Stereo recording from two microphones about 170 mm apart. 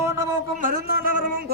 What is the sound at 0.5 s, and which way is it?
Speech, 55° right (ahead or behind).